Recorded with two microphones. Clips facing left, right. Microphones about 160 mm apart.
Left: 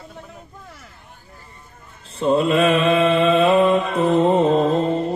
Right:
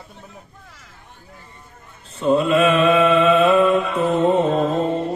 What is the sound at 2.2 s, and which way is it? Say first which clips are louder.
Mantra: even; 30° left (ahead or behind).